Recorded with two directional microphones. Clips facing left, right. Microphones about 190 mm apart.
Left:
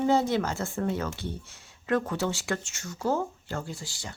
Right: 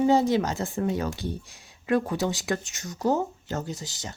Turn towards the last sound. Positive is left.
turn(degrees=-20)  # may be behind; listen again after turning